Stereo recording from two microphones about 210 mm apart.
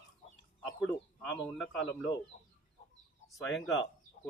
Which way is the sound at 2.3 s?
35° left (ahead or behind).